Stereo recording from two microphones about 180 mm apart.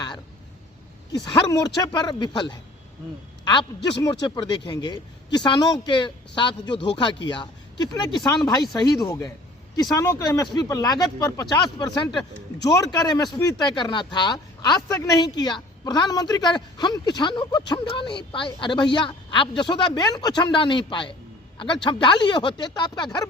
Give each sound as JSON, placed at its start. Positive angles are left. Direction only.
{"t": 1.1, "sound": "a woman's voice", "side_deg": 20}
{"t": 3.4, "sound": "a man's voice", "side_deg": 25}